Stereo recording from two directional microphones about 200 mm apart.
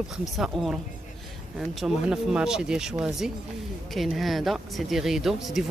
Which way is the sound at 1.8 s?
Centre (ahead or behind).